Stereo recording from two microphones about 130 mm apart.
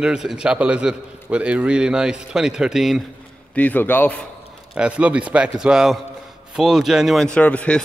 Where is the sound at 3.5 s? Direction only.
10° left (ahead or behind).